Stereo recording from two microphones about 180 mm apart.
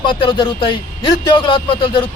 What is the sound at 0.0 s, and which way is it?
A man's voice, 25° left (ahead or behind).